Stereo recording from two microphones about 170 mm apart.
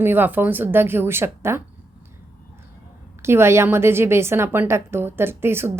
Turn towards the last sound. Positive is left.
turn(degrees=-15)  # may be behind; listen again after turning